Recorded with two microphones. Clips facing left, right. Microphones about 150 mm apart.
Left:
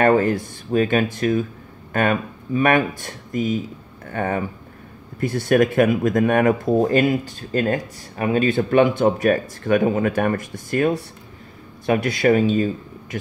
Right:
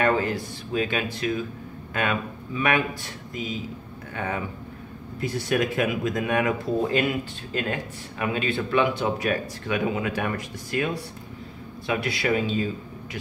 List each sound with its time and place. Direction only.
0.0 s speech: 50° left (ahead or behind)